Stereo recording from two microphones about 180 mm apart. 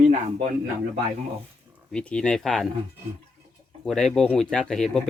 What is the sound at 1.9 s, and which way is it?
Speech, 5° left (ahead or behind).